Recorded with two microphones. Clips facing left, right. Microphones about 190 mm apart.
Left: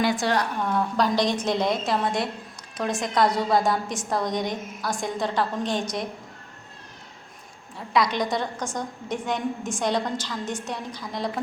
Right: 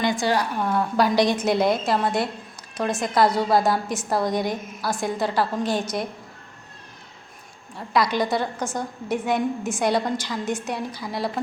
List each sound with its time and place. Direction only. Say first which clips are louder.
0.0 s a woman's voice: right 1 dB; centre (ahead or behind)
7.8 s a woman's voice: right 2 dB; centre (ahead or behind)